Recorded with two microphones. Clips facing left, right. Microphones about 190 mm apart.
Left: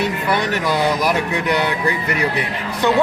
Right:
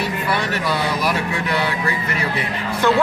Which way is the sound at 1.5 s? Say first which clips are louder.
Left 3 dB; 20° left (ahead or behind).